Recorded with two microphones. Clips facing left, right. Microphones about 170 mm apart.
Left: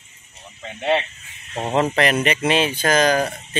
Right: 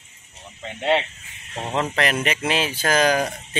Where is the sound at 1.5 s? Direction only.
25° left (ahead or behind).